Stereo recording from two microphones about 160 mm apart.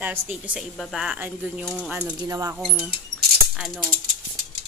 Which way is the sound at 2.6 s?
5° right (ahead or behind).